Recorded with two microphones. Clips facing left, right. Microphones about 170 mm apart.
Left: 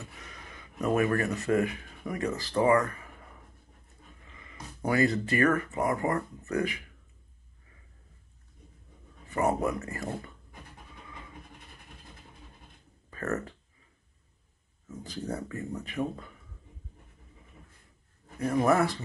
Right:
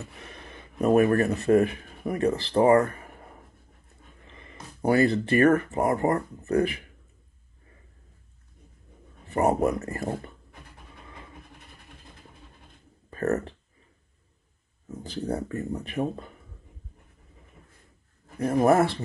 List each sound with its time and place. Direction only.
0.2 s a sound: 30° right (ahead or behind)
1.0 s speech: 30° right (ahead or behind)
2.8 s a sound: 35° right (ahead or behind)
4.3 s speech: 30° right (ahead or behind)
9.3 s speech: 35° right (ahead or behind)
13.1 s speech: 30° right (ahead or behind)
14.9 s speech: 30° right (ahead or behind)
18.4 s speech: 30° right (ahead or behind)